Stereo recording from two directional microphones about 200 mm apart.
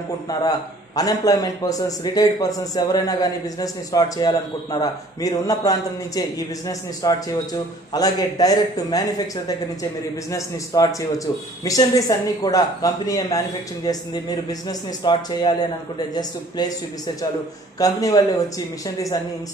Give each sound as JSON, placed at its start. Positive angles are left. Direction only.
{"t": 0.3, "sound": "a man's voice", "side_deg": 20}
{"t": 17.7, "sound": "speech", "side_deg": 20}